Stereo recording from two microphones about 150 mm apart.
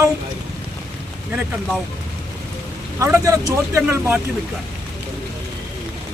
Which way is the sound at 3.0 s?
20° right (ahead or behind).